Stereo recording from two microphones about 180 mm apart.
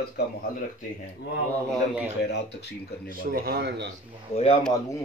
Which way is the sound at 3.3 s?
60° right (ahead or behind).